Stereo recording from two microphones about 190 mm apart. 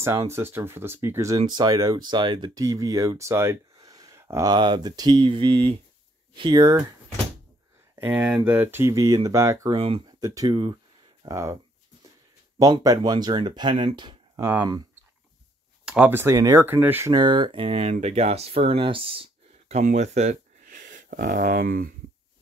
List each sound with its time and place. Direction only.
0.0 s speech: 15° right (ahead or behind)
7.9 s speech: 10° right (ahead or behind)
9.8 s speech: 30° right (ahead or behind)
10.2 s speech: 20° right (ahead or behind)
12.5 s speech: 20° right (ahead or behind)
14.3 s speech: 10° right (ahead or behind)
15.8 s speech: 5° right (ahead or behind)
17.1 s speech: 25° right (ahead or behind)
19.7 s speech: 40° right (ahead or behind)